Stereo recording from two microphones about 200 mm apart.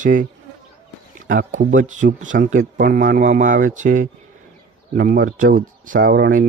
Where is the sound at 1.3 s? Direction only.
40° right (ahead or behind).